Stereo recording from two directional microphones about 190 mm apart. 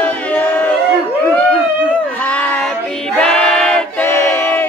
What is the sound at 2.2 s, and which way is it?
Choir, 10° left (ahead or behind).